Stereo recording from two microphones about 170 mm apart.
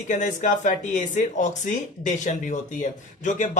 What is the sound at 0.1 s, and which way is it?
Speech, 45° left (ahead or behind).